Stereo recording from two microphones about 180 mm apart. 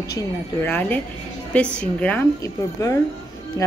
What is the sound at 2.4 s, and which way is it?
Speech, 20° left (ahead or behind).